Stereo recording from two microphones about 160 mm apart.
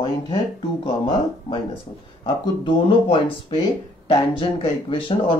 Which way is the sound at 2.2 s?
30° left (ahead or behind).